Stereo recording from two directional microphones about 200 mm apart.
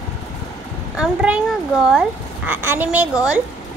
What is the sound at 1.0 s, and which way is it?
Speech, 5° right (ahead or behind).